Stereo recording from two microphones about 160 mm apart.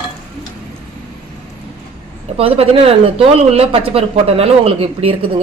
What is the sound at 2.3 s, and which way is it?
Speech, 35° right (ahead or behind).